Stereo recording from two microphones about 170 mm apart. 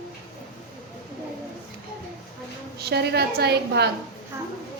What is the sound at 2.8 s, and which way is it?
A woman's voice, 75° right (ahead or behind).